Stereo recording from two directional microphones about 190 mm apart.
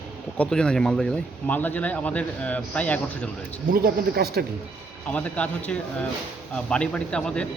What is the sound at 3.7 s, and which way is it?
Speech, 50° right (ahead or behind).